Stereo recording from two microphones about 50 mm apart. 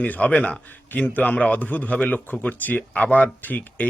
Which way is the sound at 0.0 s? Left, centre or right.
Left.